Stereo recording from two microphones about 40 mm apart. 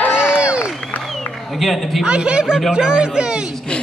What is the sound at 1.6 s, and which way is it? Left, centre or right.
Speech, centre.